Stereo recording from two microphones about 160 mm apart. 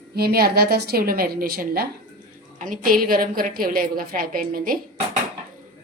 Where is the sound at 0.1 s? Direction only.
75° right (ahead or behind).